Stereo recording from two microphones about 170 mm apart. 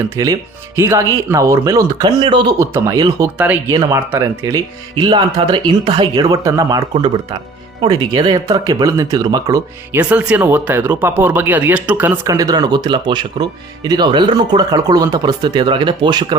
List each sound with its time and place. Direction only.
0.0 s speech: 20° right (ahead or behind)
3.7 s speech: 20° right (ahead or behind)
10.0 s speech: 10° right (ahead or behind); by 16.2 s 25° right (ahead or behind)